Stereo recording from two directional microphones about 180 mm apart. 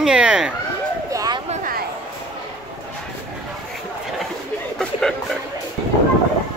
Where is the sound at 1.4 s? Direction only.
50° right (ahead or behind).